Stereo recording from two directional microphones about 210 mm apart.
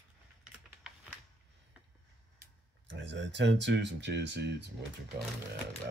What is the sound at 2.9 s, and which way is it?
Speech, 55° right (ahead or behind).